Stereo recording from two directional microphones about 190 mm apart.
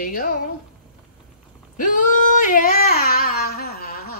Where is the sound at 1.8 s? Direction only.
45° left (ahead or behind).